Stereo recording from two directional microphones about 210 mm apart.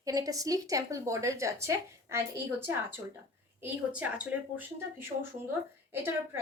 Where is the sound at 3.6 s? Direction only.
5° right (ahead or behind).